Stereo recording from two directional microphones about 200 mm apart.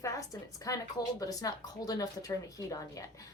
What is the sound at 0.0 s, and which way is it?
A woman's voice, 15° left (ahead or behind).